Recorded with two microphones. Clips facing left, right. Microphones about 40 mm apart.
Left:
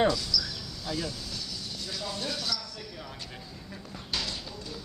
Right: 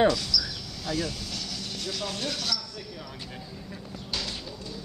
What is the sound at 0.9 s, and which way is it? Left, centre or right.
Speech, right.